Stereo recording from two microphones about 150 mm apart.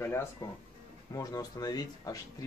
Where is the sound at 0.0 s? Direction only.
15° left (ahead or behind).